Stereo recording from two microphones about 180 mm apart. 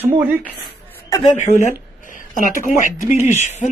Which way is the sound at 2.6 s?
45° left (ahead or behind).